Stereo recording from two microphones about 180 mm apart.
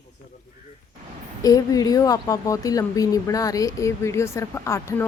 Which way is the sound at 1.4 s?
20° left (ahead or behind).